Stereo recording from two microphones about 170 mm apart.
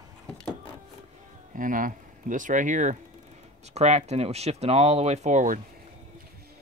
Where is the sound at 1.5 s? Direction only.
50° right (ahead or behind).